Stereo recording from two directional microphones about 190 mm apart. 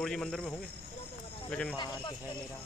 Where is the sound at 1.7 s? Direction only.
25° left (ahead or behind).